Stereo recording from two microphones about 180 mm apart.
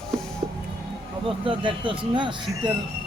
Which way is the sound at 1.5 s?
30° right (ahead or behind).